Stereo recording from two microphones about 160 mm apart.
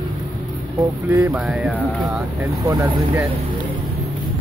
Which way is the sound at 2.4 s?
20° right (ahead or behind).